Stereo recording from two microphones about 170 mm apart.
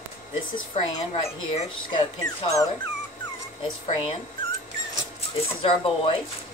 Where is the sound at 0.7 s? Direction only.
35° left (ahead or behind).